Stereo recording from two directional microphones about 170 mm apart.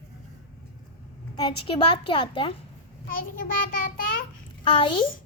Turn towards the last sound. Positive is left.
turn(degrees=30)  # may be behind; listen again after turning